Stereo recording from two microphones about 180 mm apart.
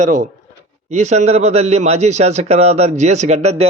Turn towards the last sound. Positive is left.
turn(degrees=-40)  # may be behind; listen again after turning